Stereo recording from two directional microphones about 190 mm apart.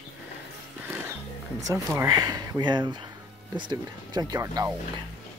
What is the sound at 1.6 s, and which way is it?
A man's voice, 15° right (ahead or behind).